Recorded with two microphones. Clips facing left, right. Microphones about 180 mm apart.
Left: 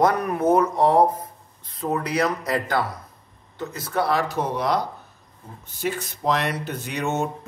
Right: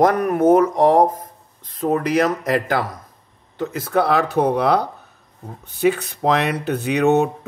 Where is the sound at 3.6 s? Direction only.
60° right (ahead or behind).